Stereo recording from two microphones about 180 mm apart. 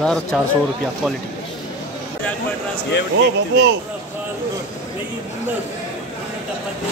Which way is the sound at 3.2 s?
70° right (ahead or behind).